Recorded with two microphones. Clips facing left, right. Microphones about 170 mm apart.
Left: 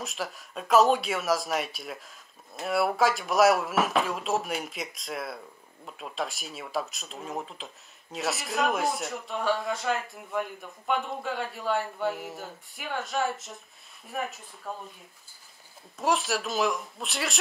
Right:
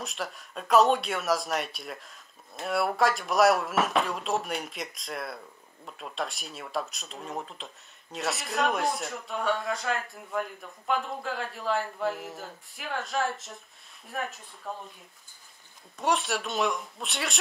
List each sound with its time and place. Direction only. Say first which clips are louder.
0.0 s speech: left 1 dB; centre (ahead or behind)
16.0 s speech: left 1 dB; centre (ahead or behind)